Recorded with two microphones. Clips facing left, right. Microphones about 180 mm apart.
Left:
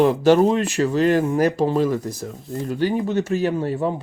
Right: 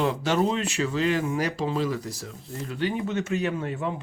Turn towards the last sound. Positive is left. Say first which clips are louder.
# left 7 dB
turn(degrees=35)  # may be behind; listen again after turning